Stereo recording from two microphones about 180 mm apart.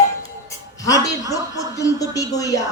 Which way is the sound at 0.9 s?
20° left (ahead or behind).